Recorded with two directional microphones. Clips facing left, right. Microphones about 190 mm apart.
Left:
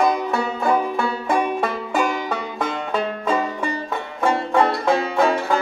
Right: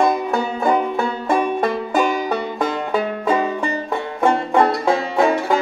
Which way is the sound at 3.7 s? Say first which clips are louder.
Right 3 dB; 20° right (ahead or behind).